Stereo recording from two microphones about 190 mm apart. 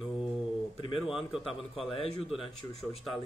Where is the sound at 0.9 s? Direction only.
Centre (ahead or behind).